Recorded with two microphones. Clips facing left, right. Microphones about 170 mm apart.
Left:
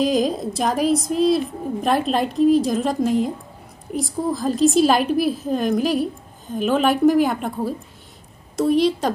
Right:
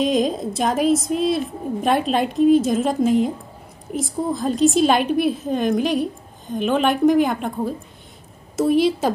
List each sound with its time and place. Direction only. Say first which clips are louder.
0.0 s a woman's voice: even; centre (ahead or behind)